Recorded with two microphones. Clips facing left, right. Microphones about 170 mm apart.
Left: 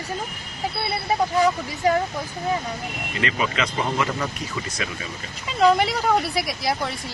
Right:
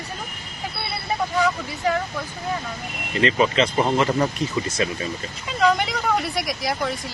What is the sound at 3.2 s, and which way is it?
Speech, 30° right (ahead or behind).